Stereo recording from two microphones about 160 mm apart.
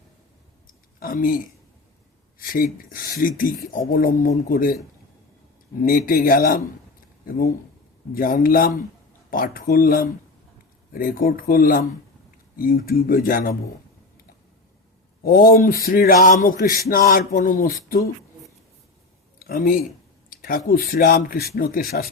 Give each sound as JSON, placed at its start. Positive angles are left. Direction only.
{"t": 0.9, "sound": "speech", "side_deg": 65}
{"t": 2.4, "sound": "speech", "side_deg": 65}
{"t": 5.8, "sound": "speech", "side_deg": 60}
{"t": 8.1, "sound": "speech", "side_deg": 65}
{"t": 15.2, "sound": "speech", "side_deg": 65}
{"t": 19.5, "sound": "speech", "side_deg": 60}